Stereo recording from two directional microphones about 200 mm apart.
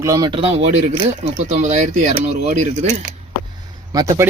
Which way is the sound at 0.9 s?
35° right (ahead or behind).